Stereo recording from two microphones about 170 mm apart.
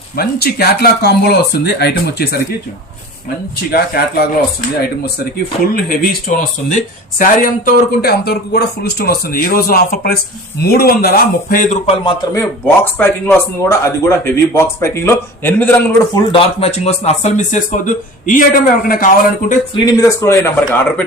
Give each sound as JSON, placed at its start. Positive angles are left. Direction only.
{"t": 0.2, "sound": "speech", "side_deg": 65}
{"t": 3.7, "sound": "speech", "side_deg": 65}
{"t": 5.7, "sound": "speech", "side_deg": 60}
{"t": 12.3, "sound": "speech", "side_deg": 15}
{"t": 16.1, "sound": "speech", "side_deg": 35}
{"t": 19.7, "sound": "speech", "side_deg": 20}